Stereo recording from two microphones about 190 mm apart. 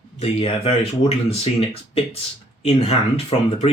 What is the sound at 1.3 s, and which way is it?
Speech, 30° left (ahead or behind).